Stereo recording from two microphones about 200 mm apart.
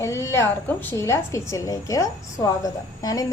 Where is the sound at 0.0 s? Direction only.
15° left (ahead or behind).